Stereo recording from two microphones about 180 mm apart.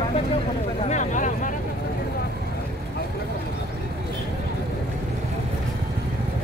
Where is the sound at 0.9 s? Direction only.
45° left (ahead or behind).